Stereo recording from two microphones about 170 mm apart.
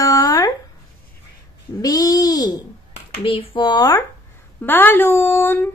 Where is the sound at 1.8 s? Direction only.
20° left (ahead or behind).